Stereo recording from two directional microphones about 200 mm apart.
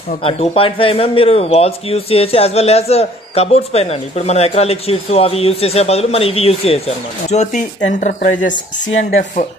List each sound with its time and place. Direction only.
0.2 s speech: 30° left (ahead or behind); by 8.5 s 45° left (ahead or behind)